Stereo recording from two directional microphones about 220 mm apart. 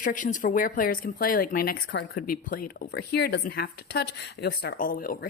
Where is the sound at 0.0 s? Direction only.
35° left (ahead or behind).